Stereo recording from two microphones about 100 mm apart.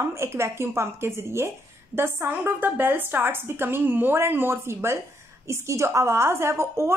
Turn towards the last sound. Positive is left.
turn(degrees=-25)  # may be behind; listen again after turning